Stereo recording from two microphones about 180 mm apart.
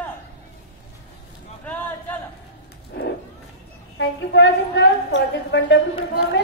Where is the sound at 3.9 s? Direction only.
80° left.